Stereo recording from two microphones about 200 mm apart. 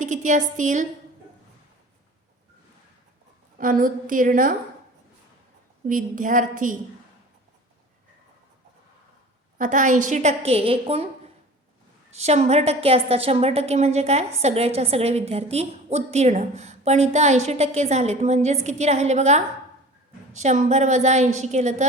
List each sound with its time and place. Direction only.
0.0 s a woman's voice: 40° right (ahead or behind)
3.6 s a woman's voice: 45° right (ahead or behind)
5.9 s a woman's voice: 40° right (ahead or behind)
9.6 s a woman's voice: 40° right (ahead or behind)
12.1 s a woman's voice: 35° right (ahead or behind)